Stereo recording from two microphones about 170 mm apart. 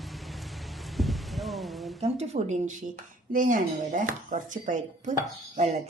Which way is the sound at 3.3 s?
50° right (ahead or behind).